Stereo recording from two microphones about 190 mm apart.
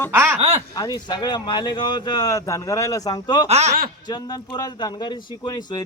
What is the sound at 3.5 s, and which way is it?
Speech, 35° right (ahead or behind).